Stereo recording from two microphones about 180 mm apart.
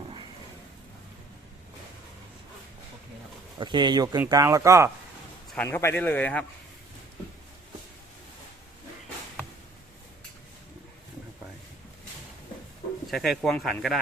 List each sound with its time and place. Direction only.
3.6 s speech: 25° right (ahead or behind)
5.5 s speech: 10° left (ahead or behind)
13.1 s speech: centre (ahead or behind)